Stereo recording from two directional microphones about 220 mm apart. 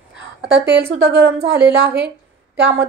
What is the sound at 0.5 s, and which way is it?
Speech, 50° right (ahead or behind).